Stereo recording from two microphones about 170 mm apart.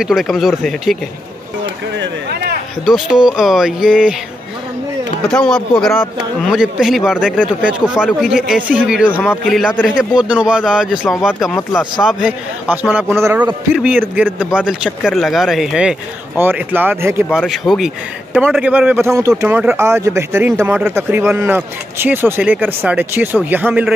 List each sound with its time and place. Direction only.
0.0 s a man's voice: centre (ahead or behind)
2.0 s a sound: 70° right (ahead or behind)
2.8 s a man's voice: 5° right (ahead or behind)
5.3 s a man's voice: 5° left (ahead or behind)
9.3 s a man's voice: 5° left (ahead or behind)
9.8 s a man's voice: 5° right (ahead or behind)
17.4 s a man's voice: centre (ahead or behind)